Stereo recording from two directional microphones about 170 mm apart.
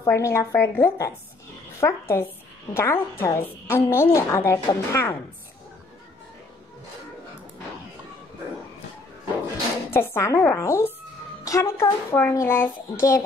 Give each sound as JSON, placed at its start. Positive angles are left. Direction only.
{"t": 0.0, "sound": "a child's voice", "side_deg": 15}
{"t": 9.8, "sound": "a child's voice", "side_deg": 15}